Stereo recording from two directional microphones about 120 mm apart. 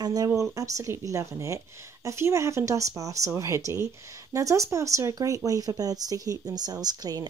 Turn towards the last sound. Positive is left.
turn(degrees=-30)  # may be behind; listen again after turning